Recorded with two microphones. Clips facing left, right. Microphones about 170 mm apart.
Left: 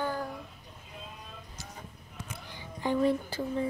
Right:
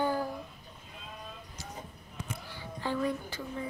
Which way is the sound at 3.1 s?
30° left (ahead or behind).